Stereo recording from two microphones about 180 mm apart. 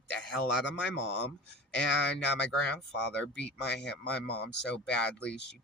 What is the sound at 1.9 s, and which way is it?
Speech, 75° left (ahead or behind).